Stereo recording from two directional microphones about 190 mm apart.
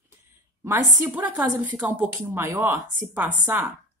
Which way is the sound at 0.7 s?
10° right (ahead or behind).